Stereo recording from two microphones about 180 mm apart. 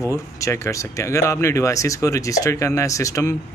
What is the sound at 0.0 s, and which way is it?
Speech, 15° left (ahead or behind).